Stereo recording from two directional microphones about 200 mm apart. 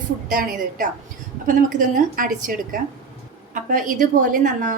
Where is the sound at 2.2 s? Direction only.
45° right (ahead or behind).